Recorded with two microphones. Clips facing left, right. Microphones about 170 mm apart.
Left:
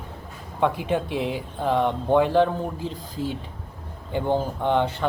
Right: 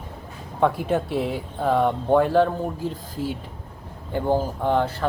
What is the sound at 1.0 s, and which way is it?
Speech, 45° right (ahead or behind).